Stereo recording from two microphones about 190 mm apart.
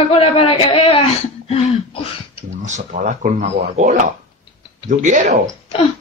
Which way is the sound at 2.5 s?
40° right (ahead or behind).